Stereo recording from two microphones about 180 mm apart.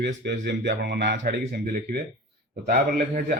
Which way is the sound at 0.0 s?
70° right (ahead or behind).